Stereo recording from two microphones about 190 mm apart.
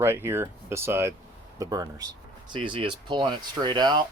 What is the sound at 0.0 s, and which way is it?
Speech, 10° right (ahead or behind).